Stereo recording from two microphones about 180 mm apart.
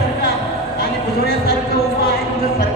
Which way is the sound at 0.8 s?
60° left (ahead or behind).